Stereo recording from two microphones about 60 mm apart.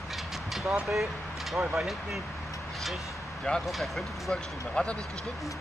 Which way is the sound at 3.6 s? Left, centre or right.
Centre.